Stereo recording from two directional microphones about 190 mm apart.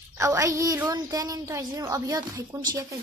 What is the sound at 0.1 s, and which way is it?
A woman's voice, 15° right (ahead or behind).